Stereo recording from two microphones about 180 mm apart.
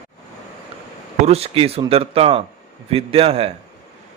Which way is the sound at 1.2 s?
35° right (ahead or behind).